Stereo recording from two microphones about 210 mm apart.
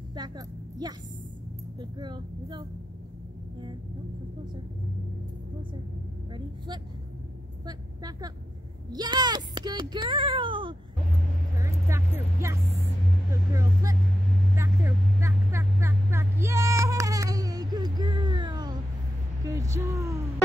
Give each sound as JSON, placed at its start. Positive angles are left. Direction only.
{"t": 0.1, "sound": "a woman's voice", "side_deg": -20}
{"t": 7.6, "sound": "a woman's voice", "side_deg": -20}
{"t": 11.5, "sound": "vehicle", "side_deg": -15}
{"t": 19.4, "sound": "a sound", "side_deg": -15}